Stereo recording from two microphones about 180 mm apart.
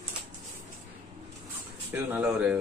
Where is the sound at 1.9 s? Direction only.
10° right (ahead or behind).